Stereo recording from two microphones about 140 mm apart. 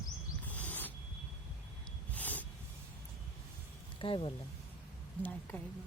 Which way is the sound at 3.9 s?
40° left (ahead or behind).